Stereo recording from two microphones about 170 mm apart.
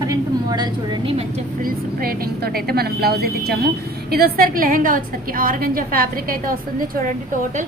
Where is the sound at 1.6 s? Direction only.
60° right (ahead or behind).